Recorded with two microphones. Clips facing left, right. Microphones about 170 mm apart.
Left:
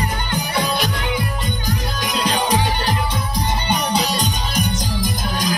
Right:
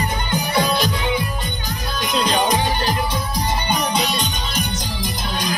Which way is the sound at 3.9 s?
35° left (ahead or behind).